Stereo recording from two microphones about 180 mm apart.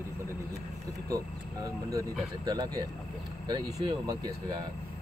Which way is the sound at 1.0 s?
20° right (ahead or behind).